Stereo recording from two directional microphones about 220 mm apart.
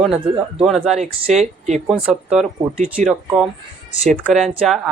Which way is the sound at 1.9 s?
Centre (ahead or behind).